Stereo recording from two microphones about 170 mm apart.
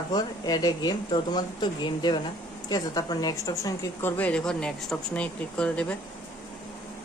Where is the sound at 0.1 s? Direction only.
25° left (ahead or behind); by 6.0 s 10° left (ahead or behind).